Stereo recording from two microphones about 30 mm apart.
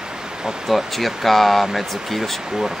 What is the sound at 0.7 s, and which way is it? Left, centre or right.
Speech, centre.